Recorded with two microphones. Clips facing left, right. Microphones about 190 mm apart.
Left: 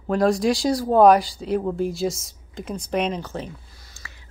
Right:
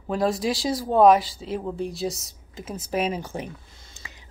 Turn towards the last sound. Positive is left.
turn(degrees=-20)  # may be behind; listen again after turning